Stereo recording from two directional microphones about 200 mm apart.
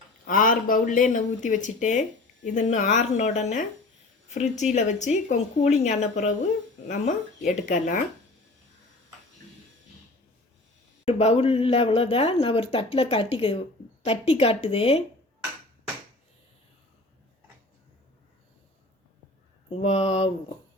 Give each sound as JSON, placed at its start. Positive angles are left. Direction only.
{"t": 0.3, "sound": "speech", "side_deg": 45}
{"t": 4.7, "sound": "speech", "side_deg": 35}
{"t": 11.0, "sound": "speech", "side_deg": 30}
{"t": 19.8, "sound": "speech", "side_deg": 30}